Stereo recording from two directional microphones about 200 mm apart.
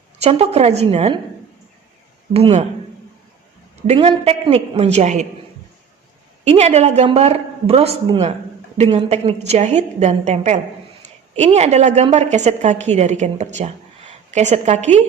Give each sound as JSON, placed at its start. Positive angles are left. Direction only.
{"t": 0.2, "sound": "a woman's voice", "side_deg": -30}
{"t": 2.3, "sound": "a woman's voice", "side_deg": -30}
{"t": 3.8, "sound": "a woman's voice", "side_deg": -30}
{"t": 6.4, "sound": "a woman's voice", "side_deg": -35}